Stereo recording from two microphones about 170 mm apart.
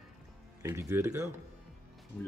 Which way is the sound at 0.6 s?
15° right (ahead or behind).